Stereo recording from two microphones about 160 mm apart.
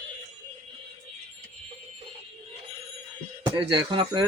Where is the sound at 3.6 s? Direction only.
30° right (ahead or behind).